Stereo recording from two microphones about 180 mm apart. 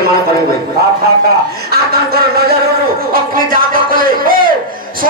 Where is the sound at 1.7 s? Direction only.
60° right (ahead or behind).